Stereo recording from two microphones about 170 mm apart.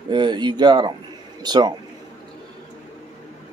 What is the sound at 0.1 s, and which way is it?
Speech, 25° right (ahead or behind).